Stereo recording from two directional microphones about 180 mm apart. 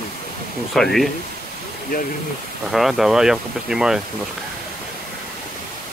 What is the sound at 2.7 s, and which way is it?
Speech, centre (ahead or behind).